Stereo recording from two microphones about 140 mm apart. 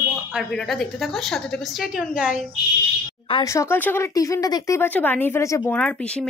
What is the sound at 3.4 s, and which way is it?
Speech, 20° left (ahead or behind).